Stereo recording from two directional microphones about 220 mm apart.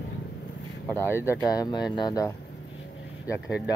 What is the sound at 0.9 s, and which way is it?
Speech, 10° left (ahead or behind).